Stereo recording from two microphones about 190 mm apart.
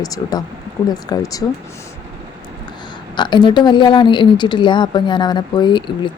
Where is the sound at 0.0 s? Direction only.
20° left (ahead or behind).